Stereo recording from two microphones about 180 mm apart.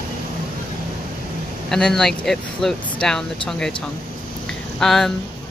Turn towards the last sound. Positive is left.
turn(degrees=0)  # may be behind; listen again after turning